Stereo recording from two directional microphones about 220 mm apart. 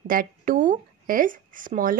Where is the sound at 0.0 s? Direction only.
40° right (ahead or behind).